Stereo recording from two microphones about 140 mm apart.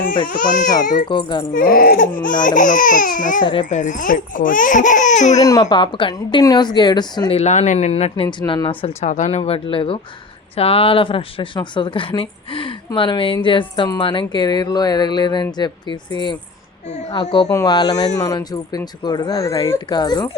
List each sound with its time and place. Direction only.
0.3 s speech: 70° left (ahead or behind)
1.0 s speech: 35° left (ahead or behind)
1.5 s speech: 90° left
2.4 s speech: 65° left (ahead or behind)
3.4 s speech: 35° left (ahead or behind)
3.7 s speech: 60° left (ahead or behind)
5.4 s speech: 25° left (ahead or behind)
7.3 s speech: 55° left (ahead or behind); by 8.7 s 35° left (ahead or behind)
8.8 s speech: 55° left (ahead or behind); by 16.0 s 30° left (ahead or behind)
17.5 s speech: 25° left (ahead or behind)